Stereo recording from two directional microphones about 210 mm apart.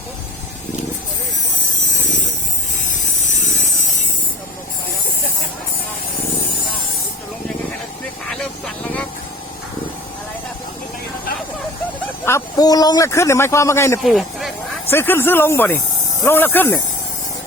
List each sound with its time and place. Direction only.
3.4 s a sound: 35° left (ahead or behind)
8.3 s vehicle: 5° left (ahead or behind)
12.2 s a man's voice: 15° left (ahead or behind)
14.0 s speech: centre (ahead or behind)
14.8 s a man's voice: 10° left (ahead or behind)